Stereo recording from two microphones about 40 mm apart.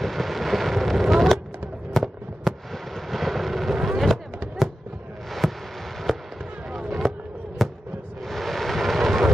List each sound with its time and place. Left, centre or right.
0.0 s vehicle: centre
1.0 s a sound: centre
2.0 s fireworks: centre
5.4 s a sound: centre
6.1 s fireworks: centre
8.3 s vehicle: centre